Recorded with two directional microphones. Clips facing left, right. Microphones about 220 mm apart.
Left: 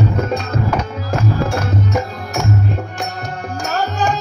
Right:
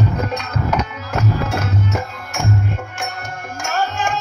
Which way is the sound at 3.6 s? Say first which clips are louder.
Left 2 dB; 40° left (ahead or behind).